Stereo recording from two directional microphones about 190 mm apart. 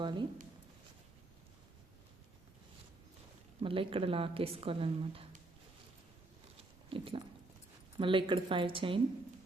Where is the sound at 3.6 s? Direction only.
30° right (ahead or behind).